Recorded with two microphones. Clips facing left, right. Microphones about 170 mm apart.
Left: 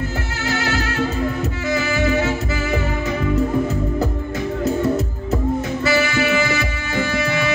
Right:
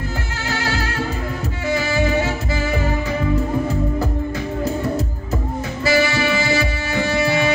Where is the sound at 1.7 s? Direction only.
30° right (ahead or behind).